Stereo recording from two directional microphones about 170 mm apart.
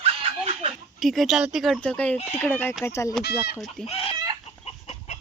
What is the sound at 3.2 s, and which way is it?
Speech, 70° left (ahead or behind).